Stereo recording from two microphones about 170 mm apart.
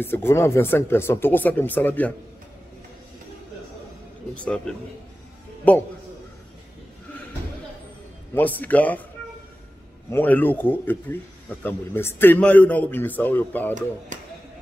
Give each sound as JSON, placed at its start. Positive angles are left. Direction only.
{"t": 0.0, "sound": "speech", "side_deg": 15}
{"t": 4.4, "sound": "speech", "side_deg": 5}
{"t": 8.4, "sound": "speech", "side_deg": 10}
{"t": 10.1, "sound": "speech", "side_deg": 10}